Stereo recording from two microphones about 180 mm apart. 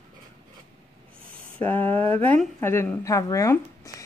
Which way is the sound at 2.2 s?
10° left (ahead or behind).